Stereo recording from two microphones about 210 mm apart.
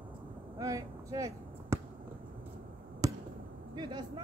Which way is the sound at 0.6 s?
15° right (ahead or behind).